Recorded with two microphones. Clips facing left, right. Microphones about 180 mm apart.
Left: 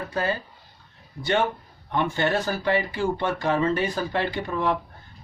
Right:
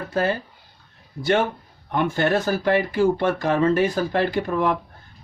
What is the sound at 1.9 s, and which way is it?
Speech, 50° right (ahead or behind).